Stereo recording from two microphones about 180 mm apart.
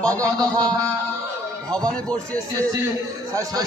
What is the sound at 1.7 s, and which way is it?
Speech, 5° left (ahead or behind).